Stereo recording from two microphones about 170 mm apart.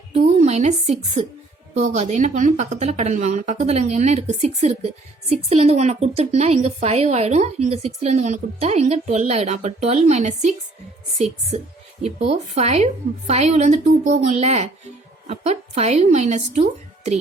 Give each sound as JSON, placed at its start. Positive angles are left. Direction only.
{"t": 0.1, "sound": "a woman's voice", "side_deg": -40}
{"t": 12.0, "sound": "a woman's voice", "side_deg": -40}